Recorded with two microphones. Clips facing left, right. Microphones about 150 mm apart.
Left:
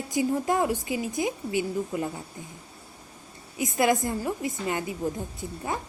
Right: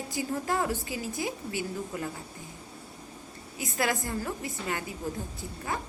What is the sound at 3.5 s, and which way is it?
A woman's voice, 20° left (ahead or behind).